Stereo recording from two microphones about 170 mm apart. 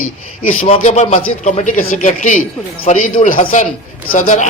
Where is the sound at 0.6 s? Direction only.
40° left (ahead or behind).